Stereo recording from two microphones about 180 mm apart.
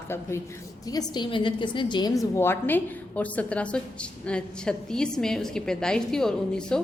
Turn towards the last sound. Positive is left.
turn(degrees=5)  # may be behind; listen again after turning